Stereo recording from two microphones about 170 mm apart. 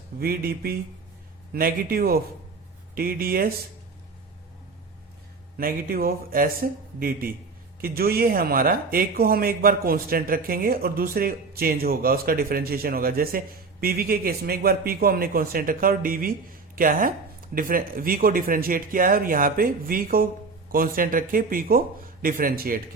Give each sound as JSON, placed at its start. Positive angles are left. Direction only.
{"t": 0.2, "sound": "speech", "side_deg": -65}
{"t": 5.5, "sound": "speech", "side_deg": -60}